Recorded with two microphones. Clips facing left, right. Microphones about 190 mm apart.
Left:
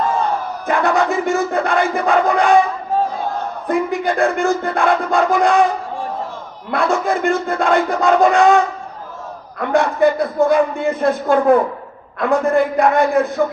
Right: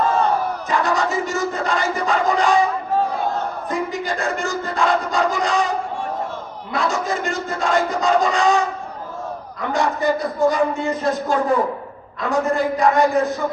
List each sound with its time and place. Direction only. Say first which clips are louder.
0.7 s battle cry: left 5 dB; 55° left (ahead or behind)
3.7 s crowd: left 8 dB; 55° left (ahead or behind)
6.7 s speech: left 5 dB; 55° left (ahead or behind)
9.6 s a man's voice: left 6 dB; 55° left (ahead or behind)